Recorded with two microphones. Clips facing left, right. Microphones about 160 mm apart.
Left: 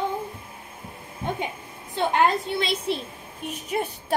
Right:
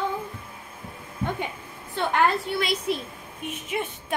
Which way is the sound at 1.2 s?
20° left (ahead or behind).